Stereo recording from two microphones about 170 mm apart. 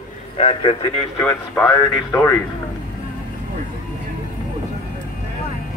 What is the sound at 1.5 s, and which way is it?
Speech, 5° left (ahead or behind).